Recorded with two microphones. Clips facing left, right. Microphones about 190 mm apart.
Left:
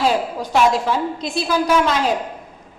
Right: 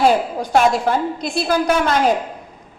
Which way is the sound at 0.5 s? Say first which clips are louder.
Right 1 dB; 55° right (ahead or behind).